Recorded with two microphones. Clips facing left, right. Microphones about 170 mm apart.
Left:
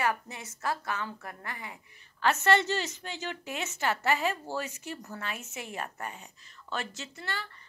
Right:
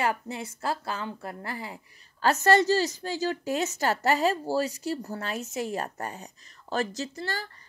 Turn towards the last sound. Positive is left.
turn(degrees=-40)  # may be behind; listen again after turning